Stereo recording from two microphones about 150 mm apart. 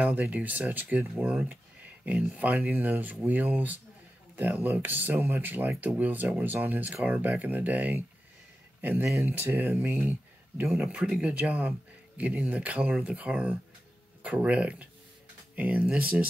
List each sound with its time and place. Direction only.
0.0 s speech: 10° right (ahead or behind)